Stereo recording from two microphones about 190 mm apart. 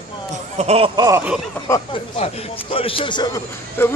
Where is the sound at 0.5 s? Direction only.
35° right (ahead or behind).